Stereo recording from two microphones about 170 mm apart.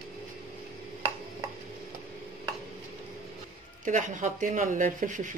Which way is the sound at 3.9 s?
45° right (ahead or behind).